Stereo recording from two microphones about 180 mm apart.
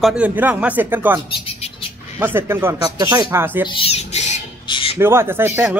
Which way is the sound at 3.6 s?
30° left (ahead or behind).